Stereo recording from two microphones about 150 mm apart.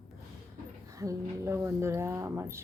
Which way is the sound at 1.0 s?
20° right (ahead or behind).